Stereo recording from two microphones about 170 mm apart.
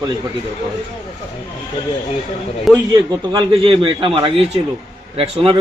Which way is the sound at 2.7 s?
Centre (ahead or behind).